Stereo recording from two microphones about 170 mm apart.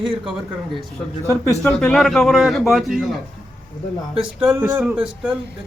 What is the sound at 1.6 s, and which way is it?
A man's voice, 5° left (ahead or behind).